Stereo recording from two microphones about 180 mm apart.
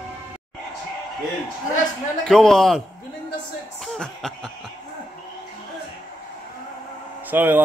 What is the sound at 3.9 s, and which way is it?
Cough, 5° left (ahead or behind).